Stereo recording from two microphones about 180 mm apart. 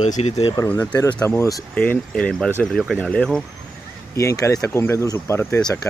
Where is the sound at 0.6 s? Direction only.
20° left (ahead or behind).